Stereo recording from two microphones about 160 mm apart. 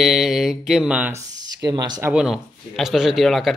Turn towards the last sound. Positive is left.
turn(degrees=0)  # may be behind; listen again after turning